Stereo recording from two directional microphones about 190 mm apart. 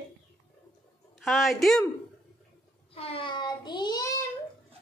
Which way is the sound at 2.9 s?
30° left (ahead or behind).